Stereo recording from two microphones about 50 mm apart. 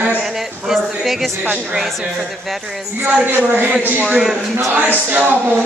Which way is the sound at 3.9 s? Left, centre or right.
Right.